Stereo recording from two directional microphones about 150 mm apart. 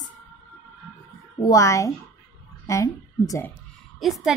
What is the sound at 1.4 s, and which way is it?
A woman's voice, 25° left (ahead or behind).